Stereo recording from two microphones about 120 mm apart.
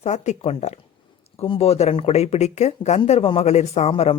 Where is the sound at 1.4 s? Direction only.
55° left (ahead or behind); by 3.0 s 70° left (ahead or behind).